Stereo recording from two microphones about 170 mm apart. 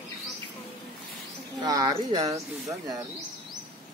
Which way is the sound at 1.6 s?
25° right (ahead or behind).